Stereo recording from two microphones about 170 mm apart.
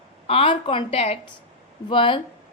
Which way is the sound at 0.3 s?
30° left (ahead or behind).